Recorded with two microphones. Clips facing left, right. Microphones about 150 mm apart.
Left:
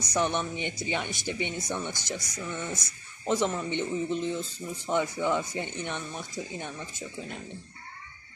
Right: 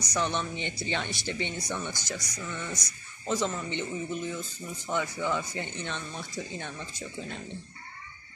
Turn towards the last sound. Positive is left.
turn(degrees=10)  # may be behind; listen again after turning